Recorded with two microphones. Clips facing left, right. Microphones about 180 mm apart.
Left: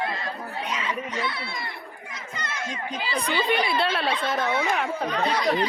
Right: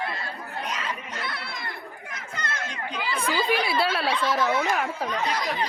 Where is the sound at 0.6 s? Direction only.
45° right (ahead or behind).